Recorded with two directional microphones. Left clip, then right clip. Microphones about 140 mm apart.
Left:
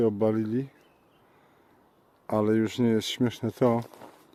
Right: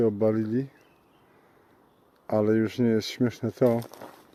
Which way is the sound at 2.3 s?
25° left (ahead or behind).